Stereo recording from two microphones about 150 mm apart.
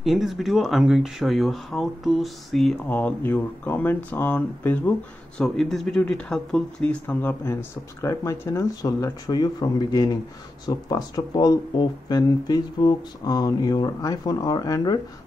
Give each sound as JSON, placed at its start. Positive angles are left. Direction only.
{"t": 0.0, "sound": "speech", "side_deg": 0}
{"t": 2.9, "sound": "speech", "side_deg": 10}